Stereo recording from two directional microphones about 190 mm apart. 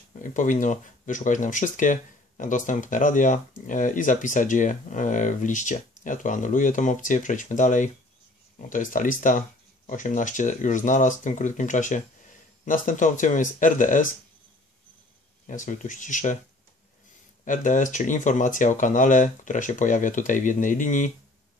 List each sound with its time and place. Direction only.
0.1 s speech: 45° left (ahead or behind)
15.4 s speech: 40° left (ahead or behind)
17.5 s speech: 45° left (ahead or behind)